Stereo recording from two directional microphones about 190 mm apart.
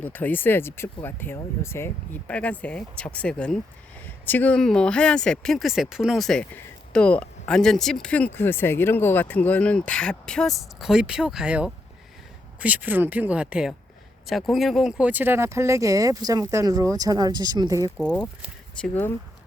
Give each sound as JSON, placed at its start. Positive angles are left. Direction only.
{"t": 0.0, "sound": "speech", "side_deg": 10}
{"t": 17.9, "sound": "speech", "side_deg": 0}